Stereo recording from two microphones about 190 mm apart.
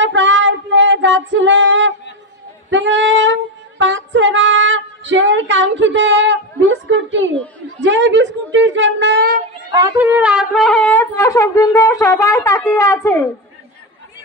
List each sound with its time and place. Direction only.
0.0 s child singing: 75° right (ahead or behind)
2.7 s female singing: 75° right (ahead or behind)
7.8 s a woman's voice: 70° right (ahead or behind)
9.9 s speech: 10° right (ahead or behind); by 13.2 s 15° left (ahead or behind)